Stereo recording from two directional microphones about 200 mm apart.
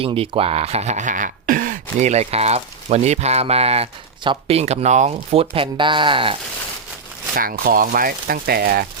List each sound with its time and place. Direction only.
0.0 s speech: 30° right (ahead or behind)
7.3 s speech: 45° right (ahead or behind)